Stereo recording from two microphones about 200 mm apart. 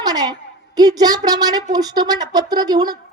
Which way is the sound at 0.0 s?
20° right (ahead or behind).